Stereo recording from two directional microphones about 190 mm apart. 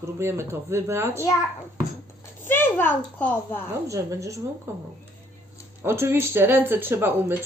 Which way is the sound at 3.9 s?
15° right (ahead or behind).